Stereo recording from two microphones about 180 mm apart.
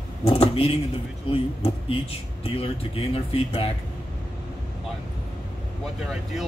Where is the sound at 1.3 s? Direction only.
30° left (ahead or behind).